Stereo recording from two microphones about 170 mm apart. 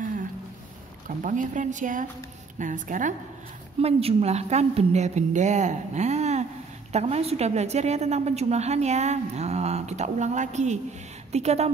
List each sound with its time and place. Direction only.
1.0 s speech: 50° right (ahead or behind)
3.8 s a woman's voice: 35° right (ahead or behind)